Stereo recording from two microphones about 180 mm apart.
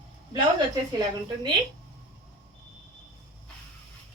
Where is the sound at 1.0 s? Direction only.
20° right (ahead or behind).